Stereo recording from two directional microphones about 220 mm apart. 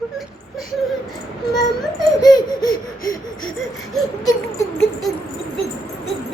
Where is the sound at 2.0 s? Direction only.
20° left (ahead or behind).